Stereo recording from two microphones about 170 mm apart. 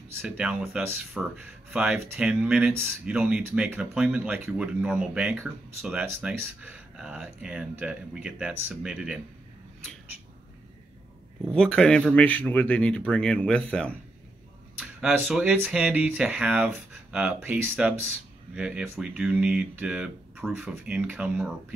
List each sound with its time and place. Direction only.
0.2 s speech: 10° right (ahead or behind)
11.5 s speech: 5° left (ahead or behind)
14.8 s speech: 5° right (ahead or behind)